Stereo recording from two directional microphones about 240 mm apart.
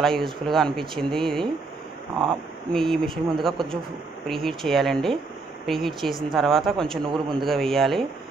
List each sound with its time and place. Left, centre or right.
0.0 s speech: centre
2.7 s speech: centre
7.1 s a man's voice: centre
7.4 s speech: centre